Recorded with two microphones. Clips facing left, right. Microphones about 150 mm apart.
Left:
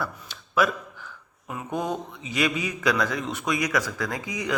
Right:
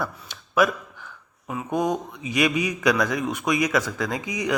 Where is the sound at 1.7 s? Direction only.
15° right (ahead or behind).